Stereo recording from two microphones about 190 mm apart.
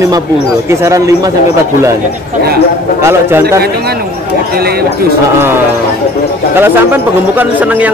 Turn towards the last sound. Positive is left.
turn(degrees=-10)  # may be behind; listen again after turning